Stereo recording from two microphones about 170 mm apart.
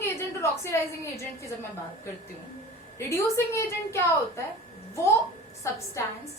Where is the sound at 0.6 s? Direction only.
15° left (ahead or behind).